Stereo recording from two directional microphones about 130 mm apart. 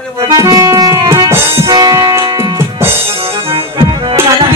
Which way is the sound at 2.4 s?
20° right (ahead or behind).